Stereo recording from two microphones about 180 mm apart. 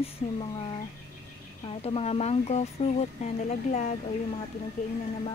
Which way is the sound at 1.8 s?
30° left (ahead or behind).